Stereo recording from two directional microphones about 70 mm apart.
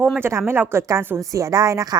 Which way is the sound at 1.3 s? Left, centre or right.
Right.